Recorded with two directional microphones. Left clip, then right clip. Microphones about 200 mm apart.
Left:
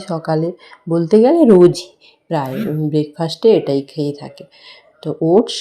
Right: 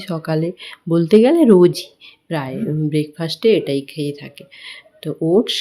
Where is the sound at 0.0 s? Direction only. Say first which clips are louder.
Left 3 dB; 30° right (ahead or behind).